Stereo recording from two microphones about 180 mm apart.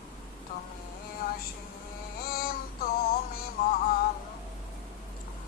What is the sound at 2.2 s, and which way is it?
Synthetic singing, 55° left (ahead or behind).